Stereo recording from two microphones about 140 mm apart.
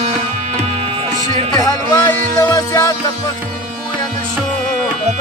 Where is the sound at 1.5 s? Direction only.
25° left (ahead or behind).